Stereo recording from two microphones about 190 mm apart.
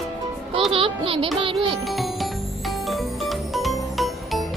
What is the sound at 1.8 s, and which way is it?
Music, centre (ahead or behind).